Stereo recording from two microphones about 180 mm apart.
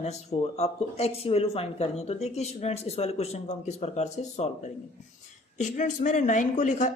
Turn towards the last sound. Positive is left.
turn(degrees=45)  # may be behind; listen again after turning